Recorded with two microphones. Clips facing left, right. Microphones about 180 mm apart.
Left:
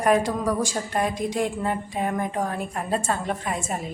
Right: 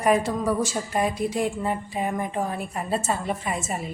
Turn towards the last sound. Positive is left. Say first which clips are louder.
# even
turn(degrees=-5)  # may be behind; listen again after turning